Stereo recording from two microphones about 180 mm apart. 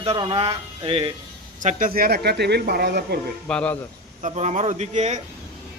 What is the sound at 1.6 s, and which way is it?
Speech, 45° right (ahead or behind).